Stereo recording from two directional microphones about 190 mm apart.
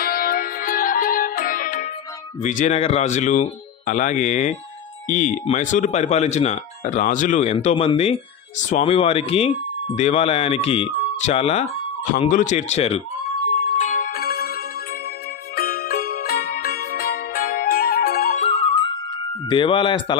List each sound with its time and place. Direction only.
0.0 s music: 50° left (ahead or behind)
2.4 s speech: 40° left (ahead or behind)
13.7 s music: 45° left (ahead or behind)
15.5 s music: 55° left (ahead or behind)
18.4 s music: 30° left (ahead or behind)
19.5 s speech: 25° left (ahead or behind)